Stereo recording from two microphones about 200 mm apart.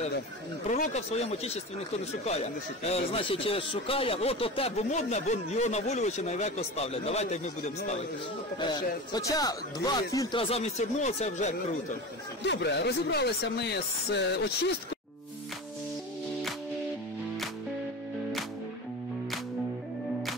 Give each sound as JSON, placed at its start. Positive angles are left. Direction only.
{"t": 0.7, "sound": "a man's voice", "side_deg": 35}
{"t": 8.5, "sound": "speech", "side_deg": 20}
{"t": 12.4, "sound": "speech", "side_deg": 60}